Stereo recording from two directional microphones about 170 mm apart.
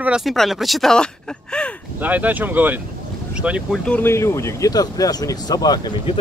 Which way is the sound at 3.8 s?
10° left (ahead or behind).